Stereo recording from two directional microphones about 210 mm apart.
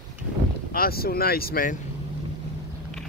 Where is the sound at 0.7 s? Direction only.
45° left (ahead or behind).